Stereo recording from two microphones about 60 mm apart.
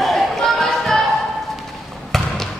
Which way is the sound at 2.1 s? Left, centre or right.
Centre.